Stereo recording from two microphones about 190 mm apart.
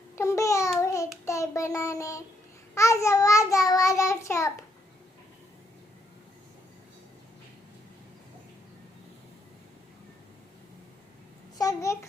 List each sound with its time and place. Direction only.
0.2 s babbling: 15° left (ahead or behind)
0.8 s child singing: 15° left (ahead or behind)
11.5 s a sound: 20° left (ahead or behind)